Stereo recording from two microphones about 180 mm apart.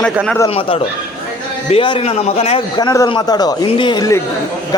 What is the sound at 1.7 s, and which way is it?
Speech, 30° left (ahead or behind).